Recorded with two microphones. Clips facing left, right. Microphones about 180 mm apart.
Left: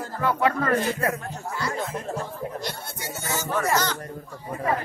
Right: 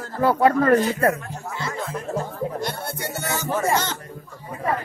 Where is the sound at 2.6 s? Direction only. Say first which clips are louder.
Right 5 dB; 55° right (ahead or behind).